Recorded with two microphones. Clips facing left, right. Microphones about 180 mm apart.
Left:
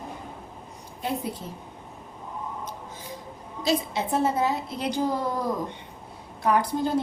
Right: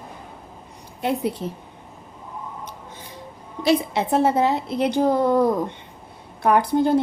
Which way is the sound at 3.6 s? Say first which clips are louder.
Right 6 dB; 65° right (ahead or behind).